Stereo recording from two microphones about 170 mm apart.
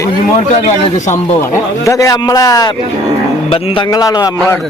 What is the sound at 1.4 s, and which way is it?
Speech, 15° left (ahead or behind).